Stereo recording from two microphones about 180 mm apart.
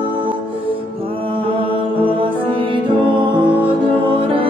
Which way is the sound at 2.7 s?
25° right (ahead or behind).